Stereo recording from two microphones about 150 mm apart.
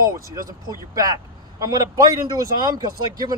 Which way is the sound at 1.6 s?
25° right (ahead or behind).